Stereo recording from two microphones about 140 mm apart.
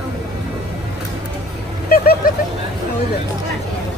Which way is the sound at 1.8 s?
90° left.